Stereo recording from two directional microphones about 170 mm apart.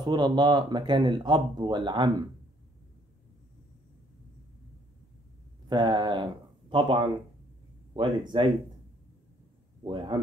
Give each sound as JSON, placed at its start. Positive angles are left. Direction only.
{"t": 0.0, "sound": "speech", "side_deg": -25}
{"t": 5.7, "sound": "speech", "side_deg": -25}
{"t": 9.8, "sound": "speech", "side_deg": -25}